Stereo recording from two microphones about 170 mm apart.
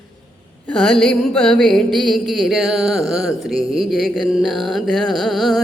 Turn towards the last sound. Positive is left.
turn(degrees=0)  # may be behind; listen again after turning